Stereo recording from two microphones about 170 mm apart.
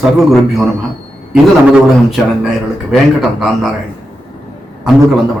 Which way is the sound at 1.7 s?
5° right (ahead or behind).